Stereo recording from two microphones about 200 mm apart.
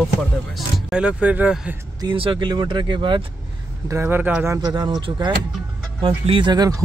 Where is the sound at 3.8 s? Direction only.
10° right (ahead or behind).